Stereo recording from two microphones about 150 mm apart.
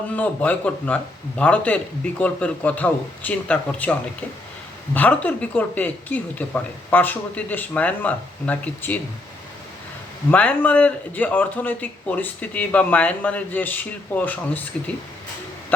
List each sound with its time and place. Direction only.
0.1 s speech: 10° left (ahead or behind)
4.9 s speech: 10° left (ahead or behind)
10.3 s speech: 10° left (ahead or behind)